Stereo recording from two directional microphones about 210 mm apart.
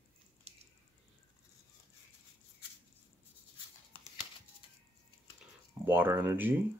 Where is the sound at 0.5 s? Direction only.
30° right (ahead or behind).